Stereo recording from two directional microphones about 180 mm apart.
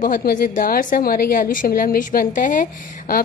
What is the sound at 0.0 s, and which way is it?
A woman's voice, 50° left (ahead or behind).